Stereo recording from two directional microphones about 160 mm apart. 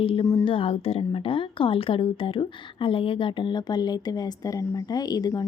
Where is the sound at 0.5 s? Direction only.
35° left (ahead or behind).